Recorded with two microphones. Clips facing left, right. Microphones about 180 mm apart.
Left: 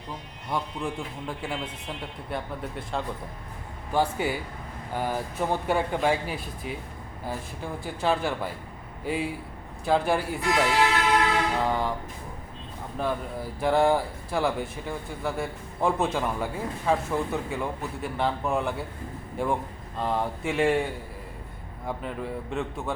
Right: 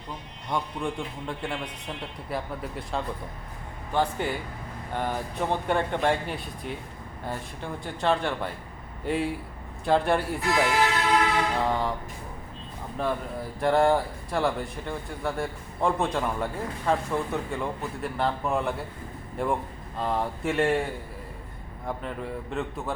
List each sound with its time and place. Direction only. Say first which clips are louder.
0.5 s speech: right 1 dB; 5° left (ahead or behind)
13.0 s speech: even; centre (ahead or behind)
21.8 s speech: left 1 dB; centre (ahead or behind)